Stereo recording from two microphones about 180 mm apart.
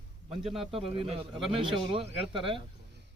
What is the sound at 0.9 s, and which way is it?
Speech, 30° right (ahead or behind).